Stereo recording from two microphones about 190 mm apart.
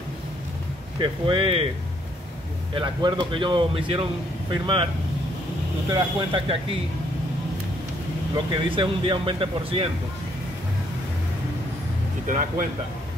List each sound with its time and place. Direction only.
0.9 s a man's voice: 25° right (ahead or behind)
2.7 s a man's voice: 25° right (ahead or behind)
5.9 s a man's voice: 25° right (ahead or behind)
8.6 s a man's voice: 25° right (ahead or behind)
12.3 s speech: 45° right (ahead or behind)